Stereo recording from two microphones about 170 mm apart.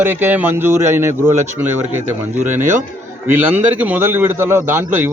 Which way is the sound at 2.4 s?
15° right (ahead or behind).